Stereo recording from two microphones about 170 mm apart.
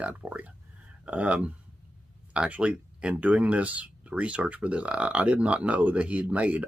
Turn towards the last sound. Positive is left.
turn(degrees=-10)  # may be behind; listen again after turning